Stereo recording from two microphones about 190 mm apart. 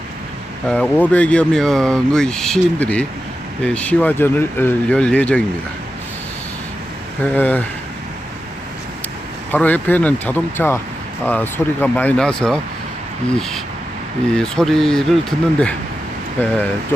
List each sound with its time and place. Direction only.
0.7 s speech: 5° left (ahead or behind)
7.2 s speech: 10° left (ahead or behind)
9.5 s speech: 10° left (ahead or behind)